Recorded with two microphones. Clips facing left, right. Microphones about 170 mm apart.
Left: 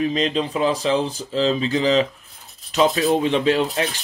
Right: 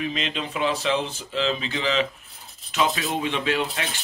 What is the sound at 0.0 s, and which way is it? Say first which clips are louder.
Speech: left 8 dB; 35° left (ahead or behind).